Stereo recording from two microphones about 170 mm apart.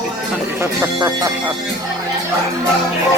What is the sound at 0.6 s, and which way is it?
Speech, 20° right (ahead or behind).